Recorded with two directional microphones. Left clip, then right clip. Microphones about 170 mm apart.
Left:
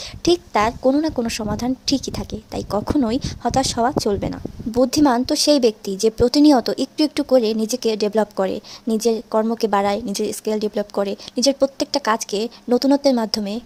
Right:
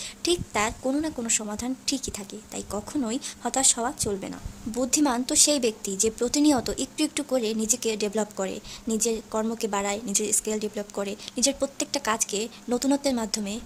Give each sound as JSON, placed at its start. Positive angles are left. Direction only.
{"t": 0.2, "sound": "a woman's voice", "side_deg": 40}